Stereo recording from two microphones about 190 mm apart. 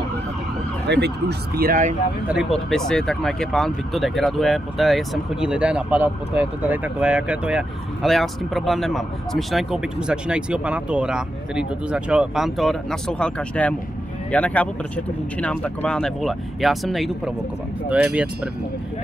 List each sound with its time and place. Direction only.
0.8 s speech: 65° right (ahead or behind)
1.6 s speech: 45° right (ahead or behind)
2.2 s speech: centre (ahead or behind)